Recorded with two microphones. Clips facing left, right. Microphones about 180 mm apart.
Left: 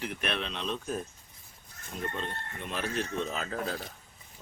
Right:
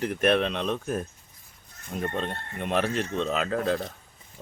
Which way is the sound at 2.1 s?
65° right (ahead or behind).